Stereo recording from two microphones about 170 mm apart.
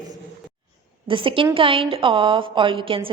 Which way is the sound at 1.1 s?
30° right (ahead or behind).